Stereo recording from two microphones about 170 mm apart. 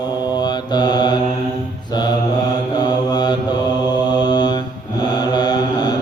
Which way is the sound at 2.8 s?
25° left (ahead or behind).